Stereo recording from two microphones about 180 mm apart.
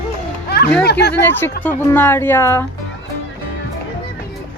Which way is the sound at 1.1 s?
10° left (ahead or behind).